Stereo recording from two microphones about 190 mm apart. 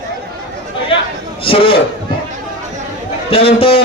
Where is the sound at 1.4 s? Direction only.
30° left (ahead or behind).